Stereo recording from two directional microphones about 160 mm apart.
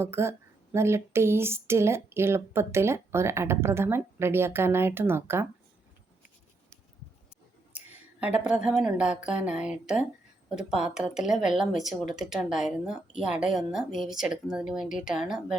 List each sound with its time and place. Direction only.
0.0 s speech: 15° right (ahead or behind)
7.7 s a woman's voice: 10° right (ahead or behind)